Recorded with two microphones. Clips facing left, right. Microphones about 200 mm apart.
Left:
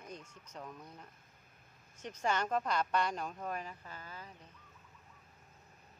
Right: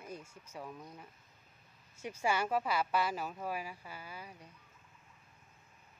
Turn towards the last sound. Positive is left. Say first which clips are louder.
# right 2 dB
turn(degrees=-10)  # may be behind; listen again after turning